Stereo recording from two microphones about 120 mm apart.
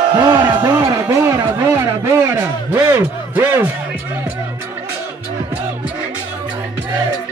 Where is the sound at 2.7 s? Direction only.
20° right (ahead or behind).